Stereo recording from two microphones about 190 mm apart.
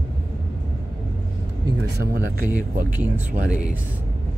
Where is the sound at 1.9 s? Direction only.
55° right (ahead or behind).